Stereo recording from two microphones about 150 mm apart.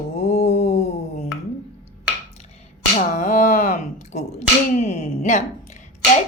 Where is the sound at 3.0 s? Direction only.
60° left (ahead or behind).